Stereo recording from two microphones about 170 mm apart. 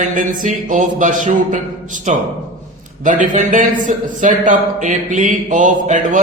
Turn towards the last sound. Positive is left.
turn(degrees=-50)  # may be behind; listen again after turning